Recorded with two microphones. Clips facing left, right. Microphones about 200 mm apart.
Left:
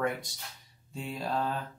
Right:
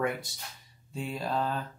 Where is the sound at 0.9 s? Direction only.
Centre (ahead or behind).